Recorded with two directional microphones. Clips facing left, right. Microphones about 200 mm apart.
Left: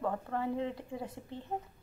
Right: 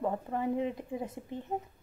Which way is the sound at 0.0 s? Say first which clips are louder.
Right 2 dB; 15° right (ahead or behind).